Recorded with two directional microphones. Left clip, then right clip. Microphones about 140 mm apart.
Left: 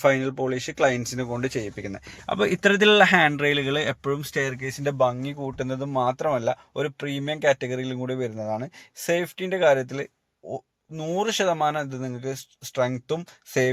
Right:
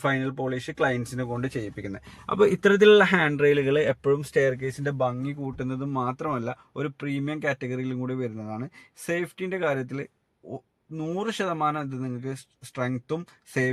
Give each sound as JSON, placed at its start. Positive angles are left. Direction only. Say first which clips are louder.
{"t": 0.0, "sound": "speech", "louder": "left 5 dB", "side_deg": 15}
{"t": 11.1, "sound": "speech", "louder": "left 6 dB", "side_deg": 10}